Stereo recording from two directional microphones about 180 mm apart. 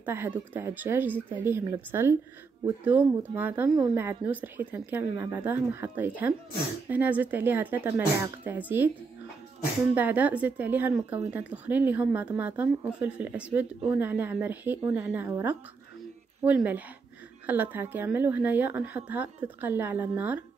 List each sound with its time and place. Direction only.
0.0 s speech: 10° right (ahead or behind)
9.9 s speech: 10° right (ahead or behind)